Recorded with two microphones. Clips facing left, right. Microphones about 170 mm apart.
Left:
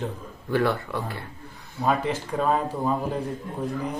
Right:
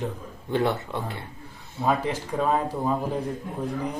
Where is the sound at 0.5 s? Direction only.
20° right (ahead or behind).